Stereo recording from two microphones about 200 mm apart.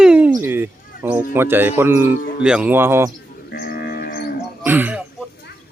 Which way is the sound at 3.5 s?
50° left (ahead or behind).